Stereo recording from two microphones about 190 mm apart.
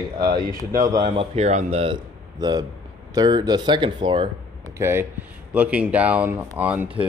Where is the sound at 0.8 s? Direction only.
25° right (ahead or behind).